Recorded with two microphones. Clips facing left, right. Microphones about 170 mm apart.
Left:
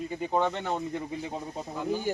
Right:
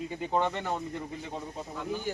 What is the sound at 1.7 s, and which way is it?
Speech, 35° left (ahead or behind).